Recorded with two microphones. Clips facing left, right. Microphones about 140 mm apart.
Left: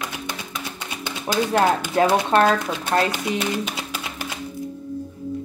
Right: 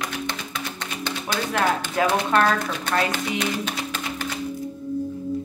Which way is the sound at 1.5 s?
35° left (ahead or behind).